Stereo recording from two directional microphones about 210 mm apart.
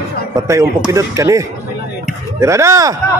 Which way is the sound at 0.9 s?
15° right (ahead or behind).